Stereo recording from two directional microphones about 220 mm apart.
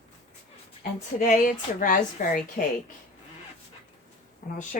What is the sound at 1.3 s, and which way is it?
A woman's voice, 35° left (ahead or behind).